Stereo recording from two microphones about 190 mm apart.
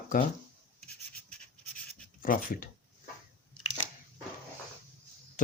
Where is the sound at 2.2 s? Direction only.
50° left (ahead or behind).